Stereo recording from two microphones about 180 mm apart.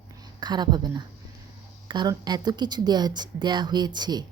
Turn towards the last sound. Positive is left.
turn(degrees=-25)  # may be behind; listen again after turning